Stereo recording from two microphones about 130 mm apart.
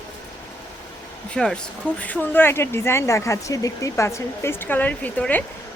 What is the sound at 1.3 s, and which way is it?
Speech, 5° left (ahead or behind).